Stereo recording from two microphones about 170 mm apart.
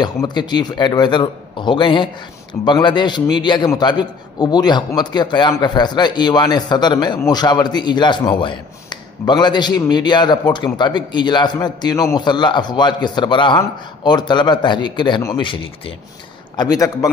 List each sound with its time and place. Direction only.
0.0 s a man's voice: 25° left (ahead or behind)